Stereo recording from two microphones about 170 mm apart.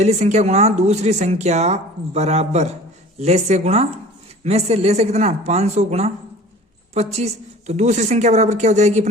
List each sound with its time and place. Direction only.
0.0 s speech: 40° right (ahead or behind)